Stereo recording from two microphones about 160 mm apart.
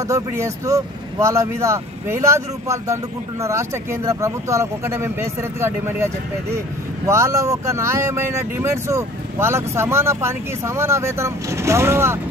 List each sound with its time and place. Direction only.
0.1 s speech: 20° right (ahead or behind)